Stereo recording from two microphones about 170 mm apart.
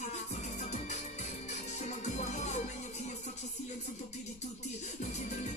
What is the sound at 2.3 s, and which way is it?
Music, 45° left (ahead or behind).